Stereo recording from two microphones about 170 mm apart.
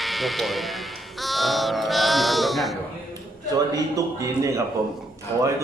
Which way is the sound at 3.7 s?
20° right (ahead or behind).